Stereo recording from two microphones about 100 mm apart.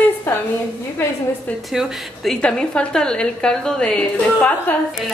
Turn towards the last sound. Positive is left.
turn(degrees=15)  # may be behind; listen again after turning